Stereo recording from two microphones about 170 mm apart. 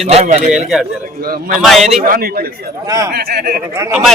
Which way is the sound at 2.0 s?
60° right (ahead or behind).